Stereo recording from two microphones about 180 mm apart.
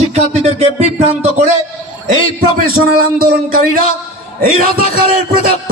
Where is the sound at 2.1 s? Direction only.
55° right (ahead or behind).